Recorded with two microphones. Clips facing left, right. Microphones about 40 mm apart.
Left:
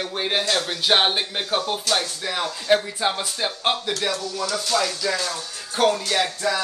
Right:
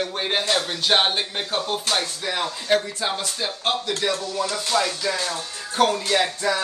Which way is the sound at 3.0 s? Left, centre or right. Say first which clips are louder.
Left 2 dB; centre.